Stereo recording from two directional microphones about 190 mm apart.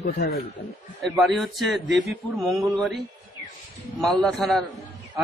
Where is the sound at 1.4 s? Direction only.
Centre (ahead or behind).